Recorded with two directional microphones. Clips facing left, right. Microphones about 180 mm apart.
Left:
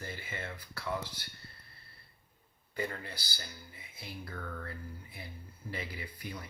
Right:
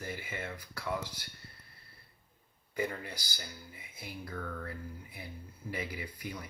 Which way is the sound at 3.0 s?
20° right (ahead or behind).